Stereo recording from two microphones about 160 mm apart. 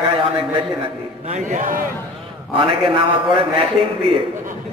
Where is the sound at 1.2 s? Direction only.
45° right (ahead or behind).